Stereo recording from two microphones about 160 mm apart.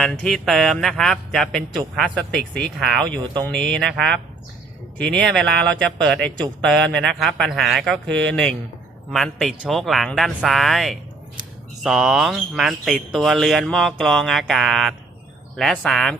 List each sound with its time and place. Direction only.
0.0 s speech: 5° left (ahead or behind)